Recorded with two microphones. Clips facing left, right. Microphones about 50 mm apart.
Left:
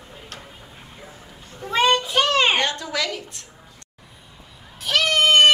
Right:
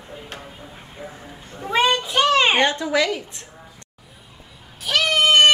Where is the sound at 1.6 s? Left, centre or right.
Centre.